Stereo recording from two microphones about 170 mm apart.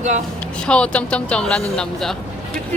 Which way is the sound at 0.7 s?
5° left (ahead or behind).